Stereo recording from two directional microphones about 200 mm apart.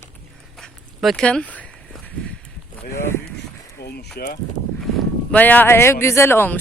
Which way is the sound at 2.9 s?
10° left (ahead or behind).